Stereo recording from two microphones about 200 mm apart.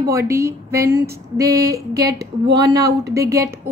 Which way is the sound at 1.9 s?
50° right (ahead or behind).